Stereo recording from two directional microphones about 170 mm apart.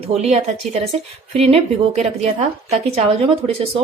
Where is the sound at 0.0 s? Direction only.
35° right (ahead or behind).